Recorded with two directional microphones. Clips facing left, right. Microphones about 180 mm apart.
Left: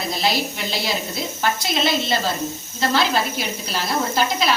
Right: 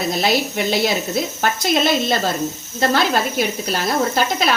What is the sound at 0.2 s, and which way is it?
A woman's voice, 50° right (ahead or behind).